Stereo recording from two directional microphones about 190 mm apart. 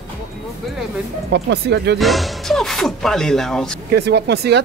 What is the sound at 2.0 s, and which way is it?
Speech, centre (ahead or behind).